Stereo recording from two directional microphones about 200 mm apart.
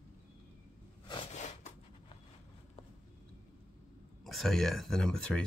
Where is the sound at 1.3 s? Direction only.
35° left (ahead or behind).